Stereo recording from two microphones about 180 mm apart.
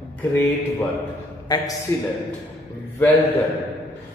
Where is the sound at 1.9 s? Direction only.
15° left (ahead or behind).